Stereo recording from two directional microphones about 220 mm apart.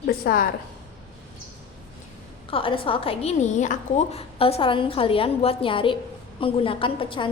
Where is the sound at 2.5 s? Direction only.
25° left (ahead or behind).